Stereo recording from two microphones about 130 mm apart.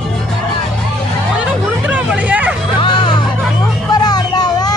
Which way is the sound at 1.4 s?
10° right (ahead or behind).